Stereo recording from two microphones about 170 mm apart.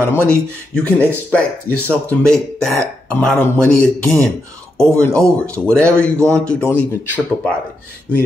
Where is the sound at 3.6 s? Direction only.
15° right (ahead or behind).